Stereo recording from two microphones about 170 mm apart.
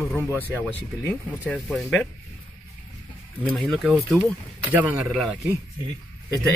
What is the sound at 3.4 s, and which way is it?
Speech, 5° left (ahead or behind).